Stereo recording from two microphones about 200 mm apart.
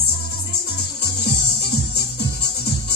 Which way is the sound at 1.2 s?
55° left (ahead or behind).